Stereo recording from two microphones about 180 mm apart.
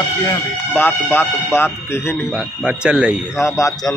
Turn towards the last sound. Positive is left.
turn(degrees=15)  # may be behind; listen again after turning